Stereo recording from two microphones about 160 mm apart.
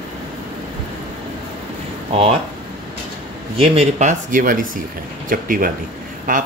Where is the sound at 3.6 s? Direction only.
45° right (ahead or behind).